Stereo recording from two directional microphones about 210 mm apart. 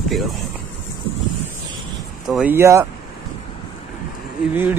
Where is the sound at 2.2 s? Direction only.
5° right (ahead or behind).